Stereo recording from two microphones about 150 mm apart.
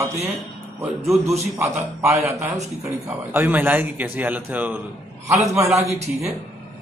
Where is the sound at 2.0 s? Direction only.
15° right (ahead or behind).